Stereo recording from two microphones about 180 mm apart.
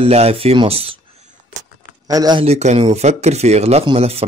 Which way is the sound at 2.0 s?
20° right (ahead or behind).